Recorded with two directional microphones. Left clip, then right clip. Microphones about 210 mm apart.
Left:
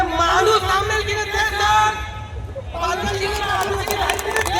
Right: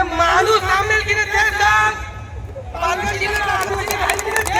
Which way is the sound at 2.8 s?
50° left (ahead or behind).